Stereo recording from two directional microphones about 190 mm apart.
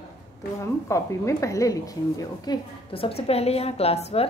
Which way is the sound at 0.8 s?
15° left (ahead or behind).